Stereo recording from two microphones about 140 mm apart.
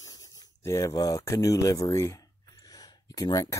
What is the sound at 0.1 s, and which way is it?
Speech, 25° left (ahead or behind).